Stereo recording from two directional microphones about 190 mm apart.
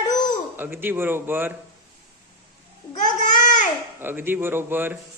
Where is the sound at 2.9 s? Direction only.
40° left (ahead or behind).